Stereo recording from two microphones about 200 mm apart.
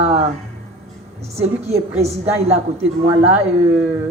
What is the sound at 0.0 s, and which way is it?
Music, 30° right (ahead or behind).